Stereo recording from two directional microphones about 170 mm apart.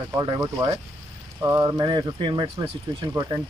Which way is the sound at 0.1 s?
20° right (ahead or behind).